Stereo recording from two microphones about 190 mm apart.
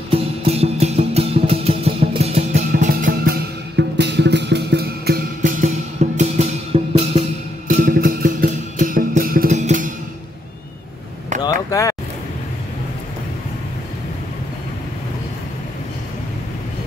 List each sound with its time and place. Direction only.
0.1 s music: 30° right (ahead or behind)
2.7 s music: 45° right (ahead or behind); by 7.2 s 30° right (ahead or behind)
7.6 s music: 45° right (ahead or behind)
11.4 s a sound: 15° left (ahead or behind)